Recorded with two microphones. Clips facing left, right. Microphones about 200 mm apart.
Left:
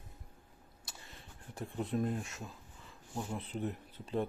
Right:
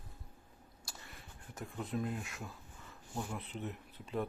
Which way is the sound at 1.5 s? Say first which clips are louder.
Left 4 dB; 30° left (ahead or behind).